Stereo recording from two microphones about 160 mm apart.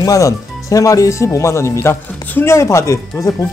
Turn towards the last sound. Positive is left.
turn(degrees=15)  # may be behind; listen again after turning